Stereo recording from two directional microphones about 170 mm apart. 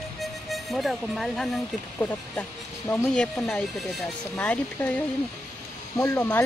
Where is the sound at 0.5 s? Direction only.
Centre (ahead or behind).